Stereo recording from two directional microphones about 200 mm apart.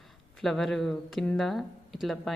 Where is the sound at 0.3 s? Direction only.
Centre (ahead or behind).